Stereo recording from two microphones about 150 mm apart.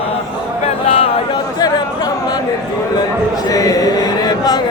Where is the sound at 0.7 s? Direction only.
45° left (ahead or behind).